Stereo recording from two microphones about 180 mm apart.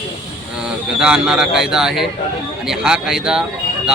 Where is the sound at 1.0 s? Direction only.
5° right (ahead or behind).